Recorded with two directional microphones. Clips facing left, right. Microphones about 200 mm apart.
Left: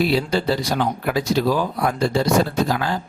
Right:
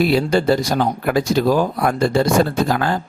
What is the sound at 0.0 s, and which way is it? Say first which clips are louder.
Speech: right 4 dB; 50° right (ahead or behind).